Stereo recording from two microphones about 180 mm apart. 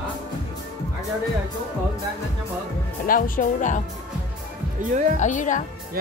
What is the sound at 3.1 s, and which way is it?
Speech, 50° left (ahead or behind).